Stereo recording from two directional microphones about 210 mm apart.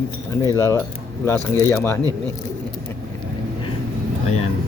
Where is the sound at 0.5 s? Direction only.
15° left (ahead or behind).